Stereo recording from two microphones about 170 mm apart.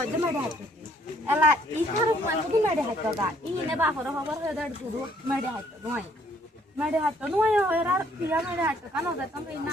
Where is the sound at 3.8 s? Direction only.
10° right (ahead or behind).